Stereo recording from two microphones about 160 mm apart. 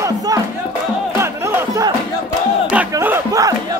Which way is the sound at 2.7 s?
15° right (ahead or behind).